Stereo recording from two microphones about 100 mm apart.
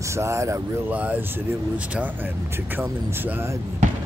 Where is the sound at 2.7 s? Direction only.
20° right (ahead or behind).